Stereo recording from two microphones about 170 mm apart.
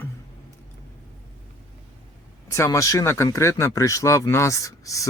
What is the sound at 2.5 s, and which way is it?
Speech, 20° left (ahead or behind).